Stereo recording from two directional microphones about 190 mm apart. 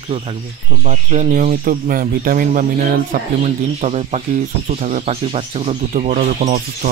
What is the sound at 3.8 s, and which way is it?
Speech, 35° right (ahead or behind).